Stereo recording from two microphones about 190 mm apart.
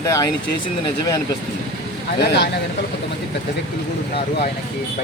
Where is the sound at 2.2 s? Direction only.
60° left (ahead or behind).